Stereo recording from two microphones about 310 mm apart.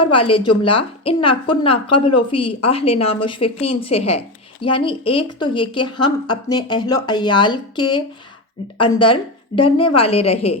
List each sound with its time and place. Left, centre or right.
0.0 s a woman's voice: centre